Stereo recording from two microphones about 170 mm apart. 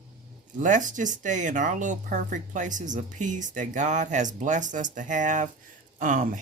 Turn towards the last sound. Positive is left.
turn(degrees=-50)  # may be behind; listen again after turning